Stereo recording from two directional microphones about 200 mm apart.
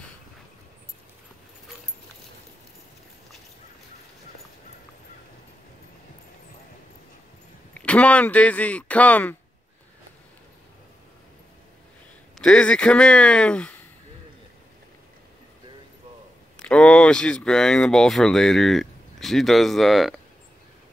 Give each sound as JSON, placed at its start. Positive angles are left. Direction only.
{"t": 7.7, "sound": "speech", "side_deg": 5}
{"t": 12.4, "sound": "speech", "side_deg": 5}
{"t": 16.5, "sound": "speech", "side_deg": 5}